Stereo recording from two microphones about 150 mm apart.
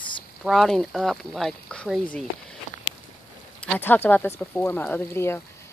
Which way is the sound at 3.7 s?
15° left (ahead or behind).